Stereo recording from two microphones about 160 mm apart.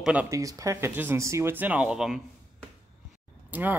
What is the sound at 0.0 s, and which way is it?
Speech, 10° right (ahead or behind).